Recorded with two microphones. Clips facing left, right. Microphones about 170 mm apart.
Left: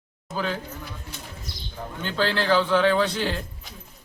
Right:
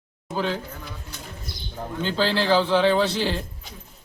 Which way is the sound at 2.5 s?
25° right (ahead or behind).